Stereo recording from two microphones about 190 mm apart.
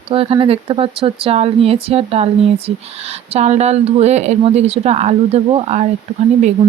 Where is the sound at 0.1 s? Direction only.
30° right (ahead or behind).